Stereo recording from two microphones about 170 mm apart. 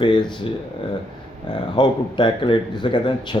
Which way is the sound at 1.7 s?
25° left (ahead or behind).